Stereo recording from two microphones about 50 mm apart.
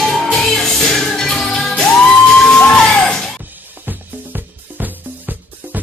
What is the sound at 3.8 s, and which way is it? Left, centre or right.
Music, right.